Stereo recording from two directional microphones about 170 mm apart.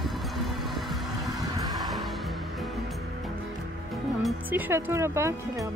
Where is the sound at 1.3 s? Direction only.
20° right (ahead or behind).